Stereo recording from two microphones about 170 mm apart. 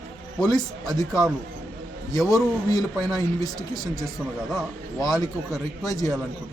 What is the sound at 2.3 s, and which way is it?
Speech, 20° left (ahead or behind).